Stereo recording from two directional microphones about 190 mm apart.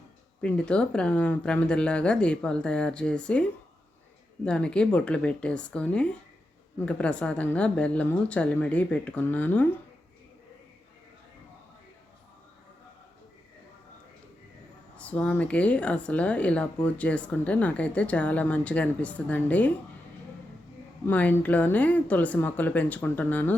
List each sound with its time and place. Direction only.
0.4 s speech: 5° left (ahead or behind)
14.9 s speech: 5° left (ahead or behind)
21.1 s speech: 10° left (ahead or behind)